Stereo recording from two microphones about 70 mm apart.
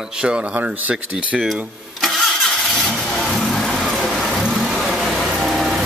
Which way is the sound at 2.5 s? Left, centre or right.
Centre.